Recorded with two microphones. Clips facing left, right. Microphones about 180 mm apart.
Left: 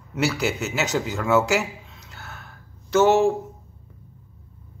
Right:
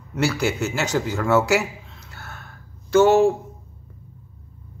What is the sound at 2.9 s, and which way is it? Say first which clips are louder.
Speech: right 2 dB; centre (ahead or behind).